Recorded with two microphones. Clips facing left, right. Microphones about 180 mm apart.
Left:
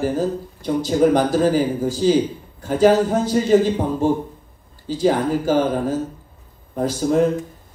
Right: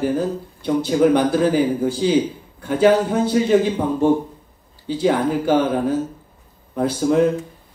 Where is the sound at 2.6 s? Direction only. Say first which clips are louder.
Even; 60° right (ahead or behind).